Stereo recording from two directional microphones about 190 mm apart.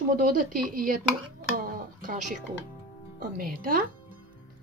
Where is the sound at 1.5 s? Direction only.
45° right (ahead or behind).